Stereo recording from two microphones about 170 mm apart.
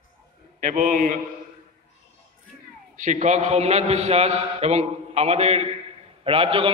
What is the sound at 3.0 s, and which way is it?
A man's voice, 45° right (ahead or behind).